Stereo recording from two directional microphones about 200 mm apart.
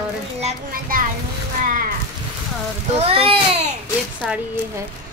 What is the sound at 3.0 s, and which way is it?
Speech, 25° right (ahead or behind).